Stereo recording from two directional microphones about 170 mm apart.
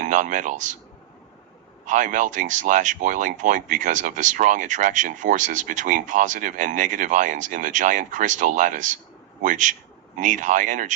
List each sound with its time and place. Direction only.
0.0 s speech: 50° right (ahead or behind)
1.9 s speech: 50° right (ahead or behind)